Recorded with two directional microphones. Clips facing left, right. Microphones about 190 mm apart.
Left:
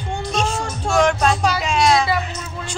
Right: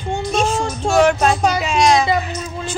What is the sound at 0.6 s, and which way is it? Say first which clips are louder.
Speech: right 4 dB; 25° right (ahead or behind).